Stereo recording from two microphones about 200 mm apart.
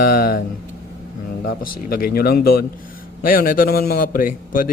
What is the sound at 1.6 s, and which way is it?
A man's voice, 45° left (ahead or behind).